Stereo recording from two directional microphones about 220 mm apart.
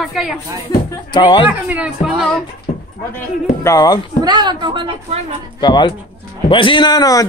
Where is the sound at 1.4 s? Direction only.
5° right (ahead or behind).